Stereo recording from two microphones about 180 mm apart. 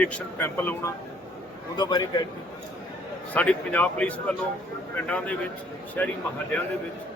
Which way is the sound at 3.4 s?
10° left (ahead or behind).